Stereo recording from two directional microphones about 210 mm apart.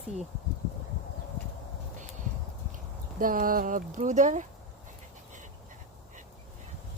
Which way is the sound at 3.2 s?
40° right (ahead or behind).